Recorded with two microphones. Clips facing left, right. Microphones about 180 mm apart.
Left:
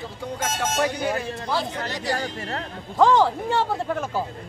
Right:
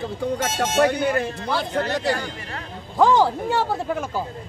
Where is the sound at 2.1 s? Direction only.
40° left (ahead or behind).